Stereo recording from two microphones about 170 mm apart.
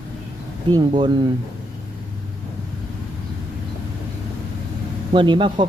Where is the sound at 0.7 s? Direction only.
25° right (ahead or behind).